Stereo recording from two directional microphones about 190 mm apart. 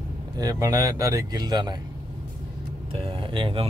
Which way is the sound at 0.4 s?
20° right (ahead or behind).